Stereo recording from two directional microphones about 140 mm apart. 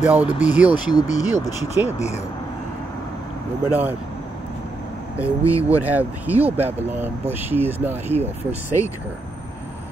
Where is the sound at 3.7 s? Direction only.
15° right (ahead or behind).